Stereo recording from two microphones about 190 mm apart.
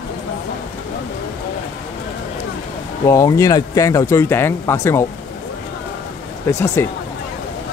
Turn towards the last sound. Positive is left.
turn(degrees=15)  # may be behind; listen again after turning